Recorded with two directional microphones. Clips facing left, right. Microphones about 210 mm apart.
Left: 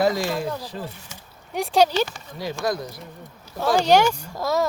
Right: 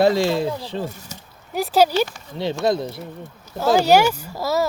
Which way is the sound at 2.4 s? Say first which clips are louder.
Right 5 dB; 25° right (ahead or behind).